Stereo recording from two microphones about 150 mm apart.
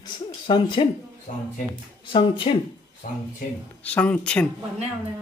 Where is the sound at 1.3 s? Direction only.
50° left (ahead or behind).